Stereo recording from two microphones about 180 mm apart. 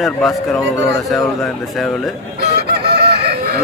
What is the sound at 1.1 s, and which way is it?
Mantra, centre (ahead or behind).